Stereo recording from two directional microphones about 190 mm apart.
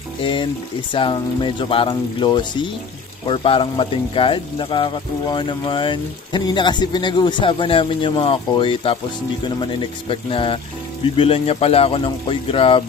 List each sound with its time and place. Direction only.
0.2 s speech: 25° left (ahead or behind)